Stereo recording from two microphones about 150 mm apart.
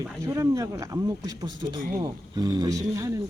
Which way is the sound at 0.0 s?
20° right (ahead or behind).